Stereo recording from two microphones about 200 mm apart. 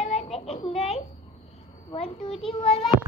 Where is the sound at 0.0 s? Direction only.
35° left (ahead or behind).